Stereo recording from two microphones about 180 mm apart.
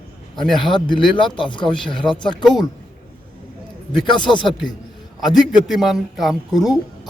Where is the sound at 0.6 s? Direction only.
25° left (ahead or behind).